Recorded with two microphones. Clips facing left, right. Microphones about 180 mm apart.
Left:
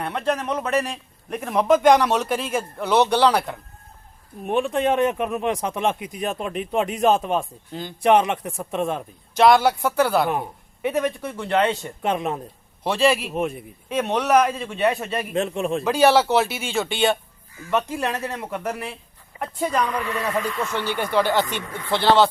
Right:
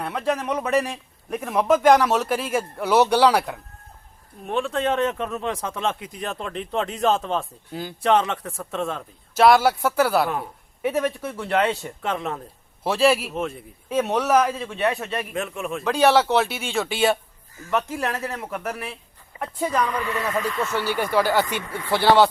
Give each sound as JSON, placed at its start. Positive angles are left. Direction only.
{"t": 0.0, "sound": "a man's voice", "side_deg": -5}
{"t": 4.4, "sound": "speech", "side_deg": 15}
{"t": 7.7, "sound": "speech", "side_deg": -5}
{"t": 8.0, "sound": "speech", "side_deg": 15}
{"t": 9.3, "sound": "speech", "side_deg": -5}
{"t": 12.0, "sound": "speech", "side_deg": 20}
{"t": 12.8, "sound": "speech", "side_deg": -5}
{"t": 13.3, "sound": "speech", "side_deg": 15}
{"t": 13.9, "sound": "speech", "side_deg": -5}
{"t": 15.3, "sound": "a man's voice", "side_deg": 30}
{"t": 15.8, "sound": "speech", "side_deg": 5}